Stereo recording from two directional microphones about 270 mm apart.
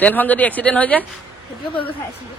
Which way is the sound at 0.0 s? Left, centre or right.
Centre.